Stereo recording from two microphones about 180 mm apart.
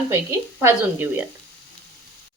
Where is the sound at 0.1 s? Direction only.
15° right (ahead or behind).